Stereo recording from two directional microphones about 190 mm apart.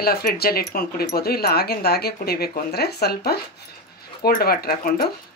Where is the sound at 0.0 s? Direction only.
55° left (ahead or behind).